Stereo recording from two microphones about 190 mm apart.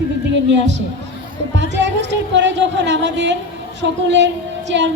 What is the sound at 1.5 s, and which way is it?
Speech, 70° right (ahead or behind).